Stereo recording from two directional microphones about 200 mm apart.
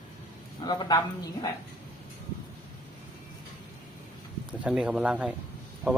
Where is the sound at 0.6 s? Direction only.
20° left (ahead or behind).